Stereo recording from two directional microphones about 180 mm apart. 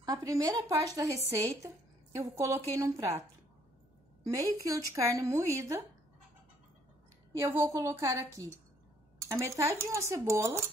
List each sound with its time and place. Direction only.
0.0 s a woman's voice: 20° right (ahead or behind)
4.3 s a woman's voice: 20° right (ahead or behind)
7.3 s a woman's voice: 15° right (ahead or behind)